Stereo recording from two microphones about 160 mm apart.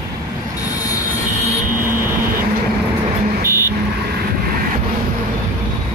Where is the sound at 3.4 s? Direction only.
70° right (ahead or behind).